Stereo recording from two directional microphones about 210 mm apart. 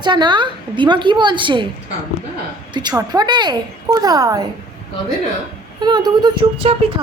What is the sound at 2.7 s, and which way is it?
A woman's voice, 20° right (ahead or behind).